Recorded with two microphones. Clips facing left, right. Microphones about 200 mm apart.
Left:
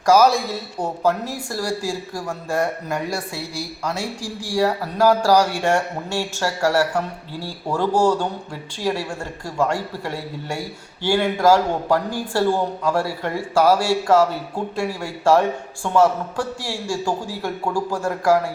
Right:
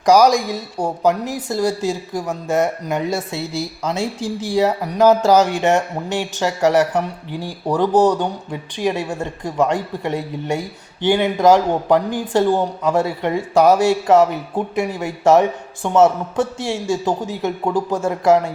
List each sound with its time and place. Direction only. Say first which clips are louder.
0.0 s speech: right 3 dB; 15° right (ahead or behind)